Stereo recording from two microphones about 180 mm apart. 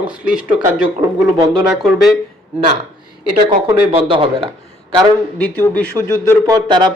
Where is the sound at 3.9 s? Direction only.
30° right (ahead or behind).